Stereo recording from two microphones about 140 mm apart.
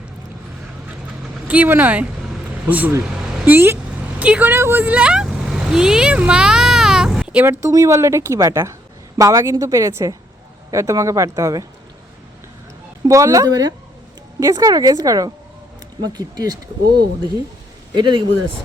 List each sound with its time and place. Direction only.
1.5 s speech: 10° right (ahead or behind)
4.2 s vehicle: 10° right (ahead or behind)
7.4 s a woman's voice: 25° right (ahead or behind)
13.1 s a woman's voice: 20° right (ahead or behind)